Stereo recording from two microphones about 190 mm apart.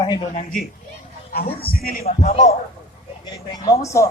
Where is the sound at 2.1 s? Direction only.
35° left (ahead or behind).